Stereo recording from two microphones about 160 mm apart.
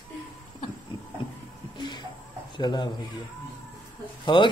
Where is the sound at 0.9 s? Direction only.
30° left (ahead or behind).